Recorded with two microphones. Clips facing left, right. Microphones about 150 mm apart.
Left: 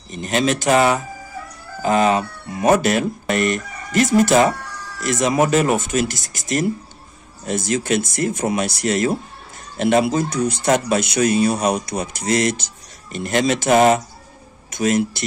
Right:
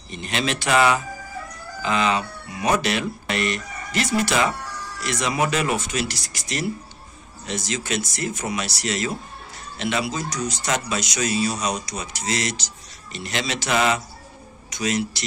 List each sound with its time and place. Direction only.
0.1 s speech: 45° left (ahead or behind)